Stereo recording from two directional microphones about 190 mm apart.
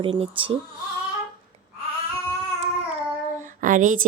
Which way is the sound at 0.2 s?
30° right (ahead or behind).